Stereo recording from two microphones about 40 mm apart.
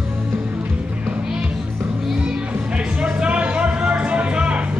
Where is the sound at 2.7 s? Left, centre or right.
Right.